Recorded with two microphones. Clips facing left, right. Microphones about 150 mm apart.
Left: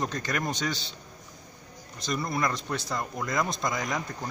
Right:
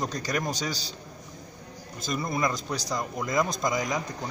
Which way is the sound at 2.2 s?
20° right (ahead or behind).